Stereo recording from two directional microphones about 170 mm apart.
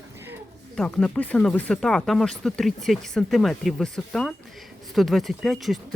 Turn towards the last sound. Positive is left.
turn(degrees=0)  # may be behind; listen again after turning